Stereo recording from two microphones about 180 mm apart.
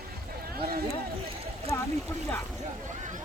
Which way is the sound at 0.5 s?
60° right (ahead or behind).